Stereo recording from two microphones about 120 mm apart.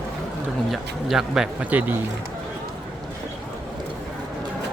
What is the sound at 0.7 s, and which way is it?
Speech, 5° right (ahead or behind).